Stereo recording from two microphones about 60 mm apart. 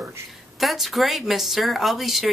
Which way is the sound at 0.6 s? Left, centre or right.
Centre.